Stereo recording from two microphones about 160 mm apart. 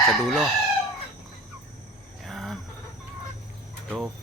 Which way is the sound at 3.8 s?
Centre (ahead or behind).